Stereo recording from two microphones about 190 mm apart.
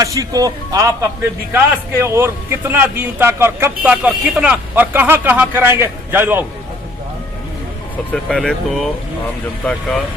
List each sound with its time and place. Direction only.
0.0 s speech: 15° right (ahead or behind)
8.1 s speech: 5° left (ahead or behind)